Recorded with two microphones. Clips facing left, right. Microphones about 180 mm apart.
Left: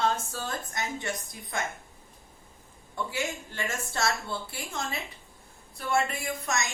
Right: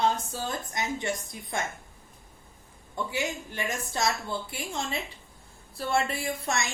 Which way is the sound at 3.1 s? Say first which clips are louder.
Right 2 dB; 15° right (ahead or behind).